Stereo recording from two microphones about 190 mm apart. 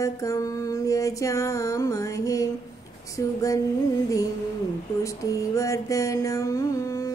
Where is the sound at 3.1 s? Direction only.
15° left (ahead or behind).